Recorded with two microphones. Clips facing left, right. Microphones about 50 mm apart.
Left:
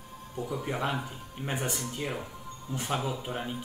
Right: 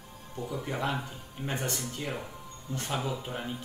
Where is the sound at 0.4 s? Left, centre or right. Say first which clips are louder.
Left 1 dB; centre.